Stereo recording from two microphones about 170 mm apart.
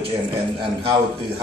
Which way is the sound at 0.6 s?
30° right (ahead or behind).